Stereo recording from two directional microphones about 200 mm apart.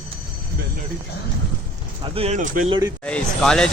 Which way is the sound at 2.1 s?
35° right (ahead or behind).